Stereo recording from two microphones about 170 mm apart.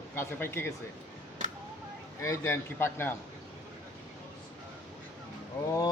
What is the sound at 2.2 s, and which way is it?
Speech, 15° left (ahead or behind).